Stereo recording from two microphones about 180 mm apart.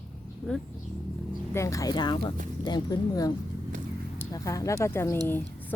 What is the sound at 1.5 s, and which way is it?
Speech, 15° left (ahead or behind).